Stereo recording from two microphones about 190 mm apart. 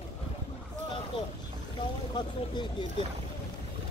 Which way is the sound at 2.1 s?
25° left (ahead or behind).